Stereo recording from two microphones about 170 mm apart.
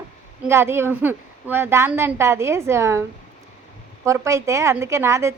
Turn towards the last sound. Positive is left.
turn(degrees=-15)  # may be behind; listen again after turning